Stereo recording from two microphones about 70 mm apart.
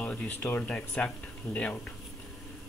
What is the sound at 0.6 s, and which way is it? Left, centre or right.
Speech, left.